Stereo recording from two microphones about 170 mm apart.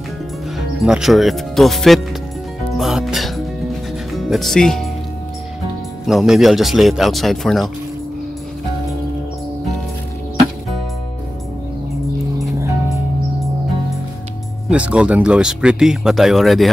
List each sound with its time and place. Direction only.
0.6 s speech: 5° right (ahead or behind)
2.8 s music: 5° right (ahead or behind)
4.1 s speech: centre (ahead or behind)
6.0 s speech: centre (ahead or behind)
12.5 s music: 15° right (ahead or behind)
14.7 s speech: 5° right (ahead or behind)